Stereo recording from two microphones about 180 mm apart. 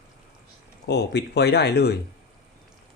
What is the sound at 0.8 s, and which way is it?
Speech, 65° left (ahead or behind).